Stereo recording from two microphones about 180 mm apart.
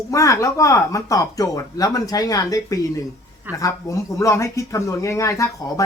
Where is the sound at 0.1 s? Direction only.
15° left (ahead or behind).